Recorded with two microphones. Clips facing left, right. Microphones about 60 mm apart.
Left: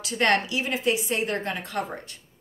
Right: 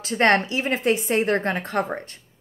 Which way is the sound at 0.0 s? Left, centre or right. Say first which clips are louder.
Right 4 dB; right.